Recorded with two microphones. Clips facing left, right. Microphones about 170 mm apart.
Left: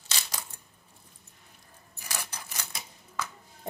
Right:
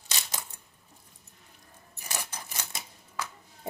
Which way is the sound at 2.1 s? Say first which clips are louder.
Right 1 dB; 25° right (ahead or behind).